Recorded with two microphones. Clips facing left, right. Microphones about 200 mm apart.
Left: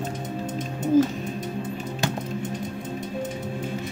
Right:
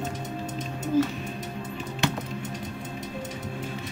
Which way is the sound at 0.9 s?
45° left (ahead or behind).